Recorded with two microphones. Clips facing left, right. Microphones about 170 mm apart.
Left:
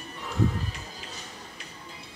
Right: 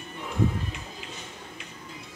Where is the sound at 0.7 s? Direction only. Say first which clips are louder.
Right 1 dB; 35° left (ahead or behind).